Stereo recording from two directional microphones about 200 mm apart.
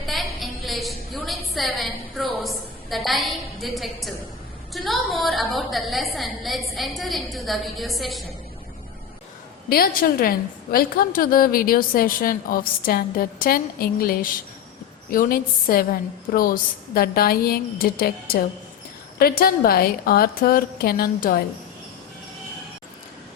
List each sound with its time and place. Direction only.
0.0 s a sound: centre (ahead or behind)
2.4 s a woman's voice: centre (ahead or behind)
9.6 s a woman's voice: 50° left (ahead or behind)